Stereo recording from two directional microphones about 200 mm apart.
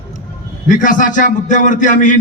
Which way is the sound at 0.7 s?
40° left (ahead or behind).